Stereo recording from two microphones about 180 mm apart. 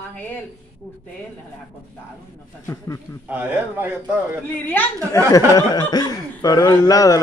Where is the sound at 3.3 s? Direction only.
10° right (ahead or behind).